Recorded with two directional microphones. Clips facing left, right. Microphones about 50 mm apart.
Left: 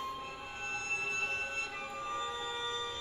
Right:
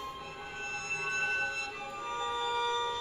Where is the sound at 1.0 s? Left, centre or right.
Right.